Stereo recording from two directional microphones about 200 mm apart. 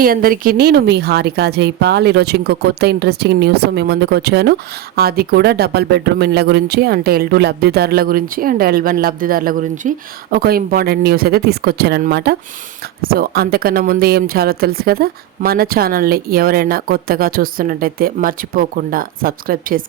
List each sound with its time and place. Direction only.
0.0 s speech: 45° right (ahead or behind)